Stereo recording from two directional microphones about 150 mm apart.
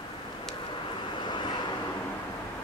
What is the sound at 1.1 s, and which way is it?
Vehicle, 30° left (ahead or behind).